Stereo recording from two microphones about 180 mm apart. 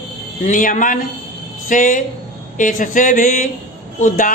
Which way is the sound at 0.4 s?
45° left (ahead or behind).